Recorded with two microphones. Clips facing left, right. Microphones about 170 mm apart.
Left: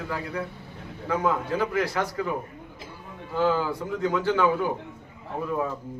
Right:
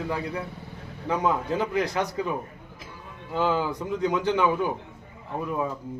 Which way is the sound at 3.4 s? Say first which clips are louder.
Left 1 dB; 20° right (ahead or behind).